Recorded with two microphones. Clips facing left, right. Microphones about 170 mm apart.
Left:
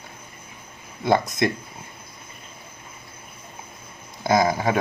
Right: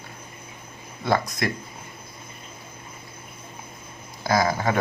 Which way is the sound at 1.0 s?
20° left (ahead or behind).